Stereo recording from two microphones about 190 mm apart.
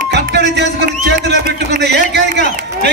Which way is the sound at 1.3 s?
60° right (ahead or behind).